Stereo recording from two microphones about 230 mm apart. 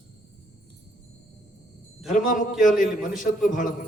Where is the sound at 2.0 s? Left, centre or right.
Left.